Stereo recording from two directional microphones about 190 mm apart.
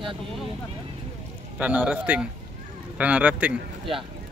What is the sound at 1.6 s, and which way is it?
A man's voice, 10° right (ahead or behind).